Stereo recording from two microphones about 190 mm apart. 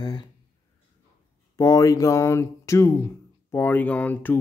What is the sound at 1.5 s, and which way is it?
Speech, 20° left (ahead or behind).